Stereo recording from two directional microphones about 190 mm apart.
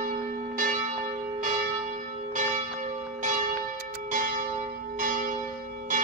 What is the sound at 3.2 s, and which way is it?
Church bell, 40° right (ahead or behind).